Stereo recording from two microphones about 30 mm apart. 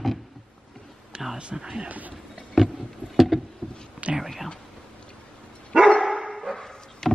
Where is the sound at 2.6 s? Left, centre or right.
Centre.